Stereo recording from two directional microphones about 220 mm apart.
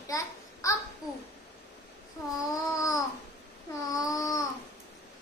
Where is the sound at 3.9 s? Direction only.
15° left (ahead or behind).